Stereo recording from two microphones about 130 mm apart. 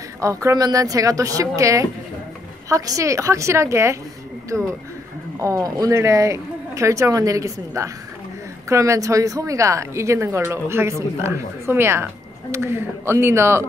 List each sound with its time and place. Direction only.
0.2 s a woman's voice: 25° right (ahead or behind)